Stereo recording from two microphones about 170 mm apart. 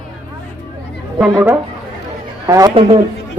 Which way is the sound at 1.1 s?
5° right (ahead or behind).